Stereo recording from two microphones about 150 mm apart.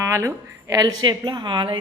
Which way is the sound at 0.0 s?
20° right (ahead or behind).